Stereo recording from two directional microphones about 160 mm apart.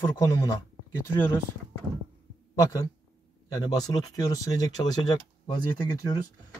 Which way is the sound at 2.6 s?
20° left (ahead or behind).